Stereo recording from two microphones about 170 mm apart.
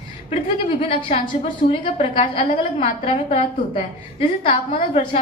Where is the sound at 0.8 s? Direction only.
35° left (ahead or behind).